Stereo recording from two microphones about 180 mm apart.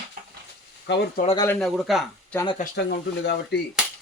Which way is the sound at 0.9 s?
70° left (ahead or behind).